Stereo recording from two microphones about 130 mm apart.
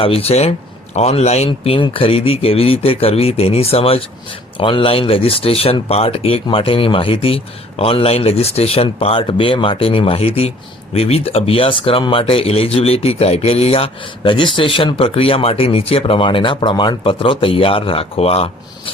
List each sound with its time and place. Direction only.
0.0 s speech: 50° left (ahead or behind)